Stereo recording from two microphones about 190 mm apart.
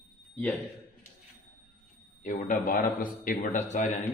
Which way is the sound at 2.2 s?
45° left (ahead or behind).